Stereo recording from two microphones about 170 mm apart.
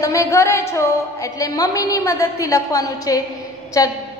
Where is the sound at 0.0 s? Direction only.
20° left (ahead or behind).